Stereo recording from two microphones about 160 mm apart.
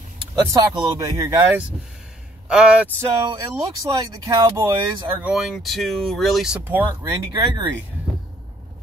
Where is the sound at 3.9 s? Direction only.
25° right (ahead or behind).